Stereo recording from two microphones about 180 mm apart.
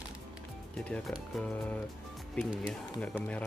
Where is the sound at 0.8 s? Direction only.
5° left (ahead or behind).